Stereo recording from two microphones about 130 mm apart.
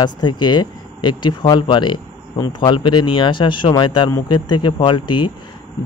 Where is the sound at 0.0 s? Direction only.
35° left (ahead or behind).